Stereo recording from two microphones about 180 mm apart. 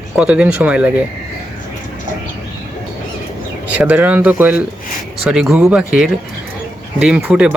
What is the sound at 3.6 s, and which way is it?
Speech, 10° right (ahead or behind).